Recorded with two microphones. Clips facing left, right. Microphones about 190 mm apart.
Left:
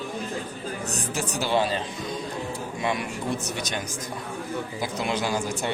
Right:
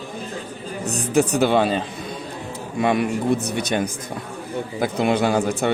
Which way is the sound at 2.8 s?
55° right (ahead or behind).